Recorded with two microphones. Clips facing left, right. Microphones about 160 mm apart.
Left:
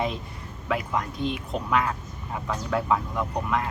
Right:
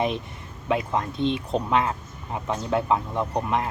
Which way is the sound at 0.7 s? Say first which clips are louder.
Right 3 dB; 25° right (ahead or behind).